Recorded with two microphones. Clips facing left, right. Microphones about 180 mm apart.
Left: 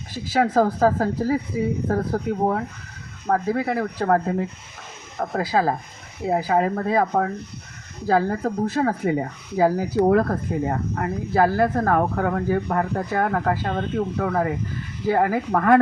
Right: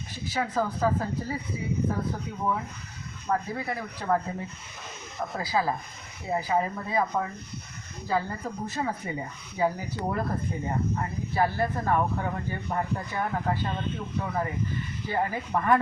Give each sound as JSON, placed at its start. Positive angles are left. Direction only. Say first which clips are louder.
{"t": 0.1, "sound": "speech", "louder": "left 10 dB", "side_deg": 90}
{"t": 1.9, "sound": "speech", "louder": "left 8 dB", "side_deg": 75}
{"t": 5.1, "sound": "speech", "louder": "left 6 dB", "side_deg": 55}
{"t": 6.2, "sound": "speech", "louder": "left 7 dB", "side_deg": 70}
{"t": 8.0, "sound": "speech", "louder": "left 9 dB", "side_deg": 90}
{"t": 10.1, "sound": "speech", "louder": "left 10 dB", "side_deg": 65}